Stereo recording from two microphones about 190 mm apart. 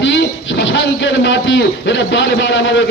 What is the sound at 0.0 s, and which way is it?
A man's voice, 70° left (ahead or behind).